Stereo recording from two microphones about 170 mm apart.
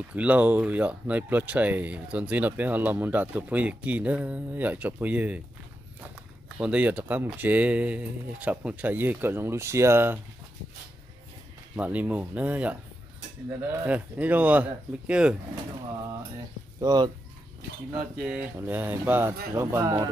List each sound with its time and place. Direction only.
0.1 s speech: 10° right (ahead or behind)
6.6 s speech: 10° right (ahead or behind)
11.7 s speech: 10° right (ahead or behind)
16.8 s speech: 25° right (ahead or behind)
17.9 s speech: 5° right (ahead or behind)